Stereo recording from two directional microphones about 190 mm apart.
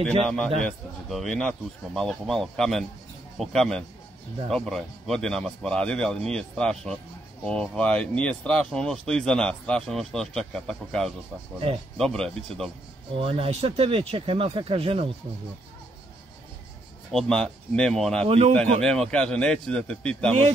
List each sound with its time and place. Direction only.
0.2 s speech: 5° left (ahead or behind)
13.1 s speech: 30° right (ahead or behind)
17.1 s speech: 5° left (ahead or behind)
18.2 s speech: 35° right (ahead or behind)
18.5 s speech: 5° left (ahead or behind)